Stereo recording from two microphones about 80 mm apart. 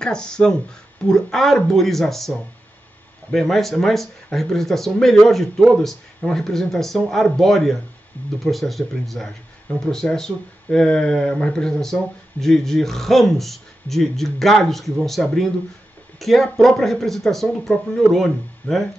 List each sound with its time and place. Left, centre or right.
0.0 s speech: centre
3.3 s speech: centre